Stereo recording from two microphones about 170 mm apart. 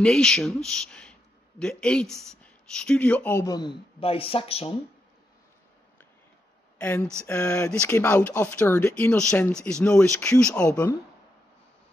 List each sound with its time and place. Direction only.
0.0 s speech: 5° left (ahead or behind); by 4.7 s 35° left (ahead or behind)
6.8 s speech: 10° left (ahead or behind)
10.7 s a woman's voice: 20° left (ahead or behind)